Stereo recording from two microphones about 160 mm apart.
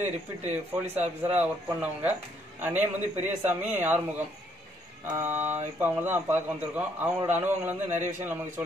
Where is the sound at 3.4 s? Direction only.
10° right (ahead or behind).